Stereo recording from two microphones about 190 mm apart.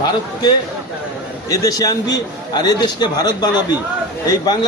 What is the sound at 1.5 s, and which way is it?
A man's voice, 20° left (ahead or behind).